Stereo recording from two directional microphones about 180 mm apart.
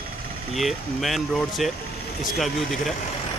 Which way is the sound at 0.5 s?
Centre (ahead or behind).